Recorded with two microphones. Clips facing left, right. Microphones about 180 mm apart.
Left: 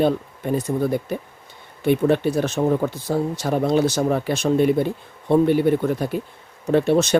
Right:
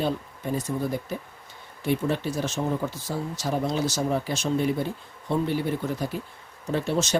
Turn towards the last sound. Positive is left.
turn(degrees=60)  # may be behind; listen again after turning